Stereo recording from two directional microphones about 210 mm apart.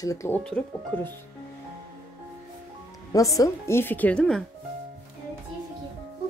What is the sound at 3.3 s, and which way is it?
Speech, 15° left (ahead or behind).